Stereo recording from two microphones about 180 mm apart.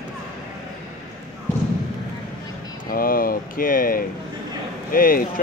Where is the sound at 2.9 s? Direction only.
55° left (ahead or behind).